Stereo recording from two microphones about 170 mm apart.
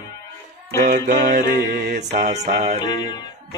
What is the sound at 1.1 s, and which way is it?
Mantra, 60° right (ahead or behind).